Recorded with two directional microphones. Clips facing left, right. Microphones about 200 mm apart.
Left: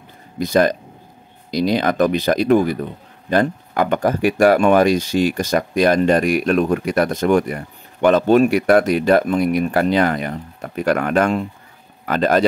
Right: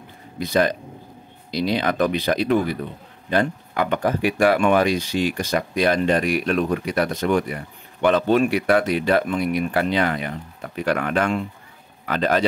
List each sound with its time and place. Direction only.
0.4 s speech: 45° left (ahead or behind)